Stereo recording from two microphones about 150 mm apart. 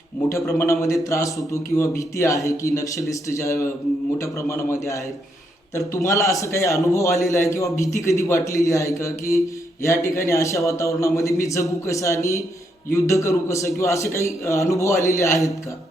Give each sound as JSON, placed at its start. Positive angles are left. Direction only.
{"t": 0.3, "sound": "speech", "side_deg": 20}